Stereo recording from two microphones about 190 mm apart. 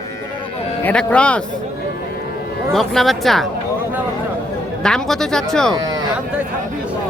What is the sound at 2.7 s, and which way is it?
Speech, centre (ahead or behind).